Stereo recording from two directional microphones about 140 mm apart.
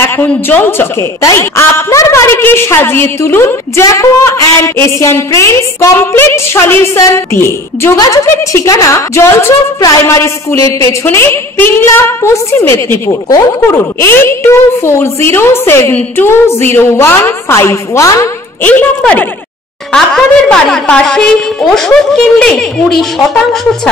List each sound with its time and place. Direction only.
0.0 s a woman's voice: 15° left (ahead or behind)
13.9 s a woman's voice: 15° left (ahead or behind)